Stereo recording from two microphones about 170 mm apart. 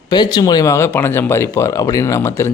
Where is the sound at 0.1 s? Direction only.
25° left (ahead or behind).